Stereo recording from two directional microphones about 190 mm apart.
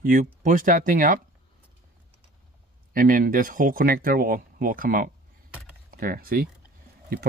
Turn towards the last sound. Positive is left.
turn(degrees=-50)  # may be behind; listen again after turning